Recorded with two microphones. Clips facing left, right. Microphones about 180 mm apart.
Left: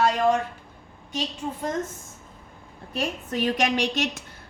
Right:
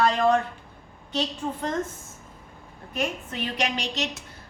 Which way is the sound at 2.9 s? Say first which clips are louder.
Left 2 dB; 40° left (ahead or behind).